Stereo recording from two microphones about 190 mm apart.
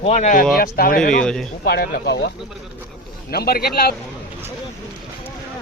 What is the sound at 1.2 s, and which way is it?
Speech, 5° left (ahead or behind).